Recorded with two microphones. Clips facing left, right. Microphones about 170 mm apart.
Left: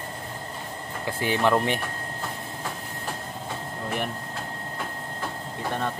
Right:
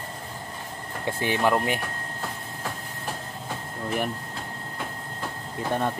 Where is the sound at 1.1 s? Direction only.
20° right (ahead or behind).